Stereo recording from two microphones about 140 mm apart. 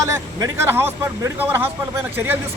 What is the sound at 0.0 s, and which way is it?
Speech, 20° right (ahead or behind).